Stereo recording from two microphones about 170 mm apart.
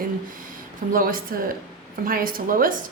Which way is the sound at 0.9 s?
55° right (ahead or behind).